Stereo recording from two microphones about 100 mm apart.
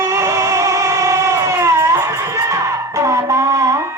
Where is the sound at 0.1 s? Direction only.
30° right (ahead or behind).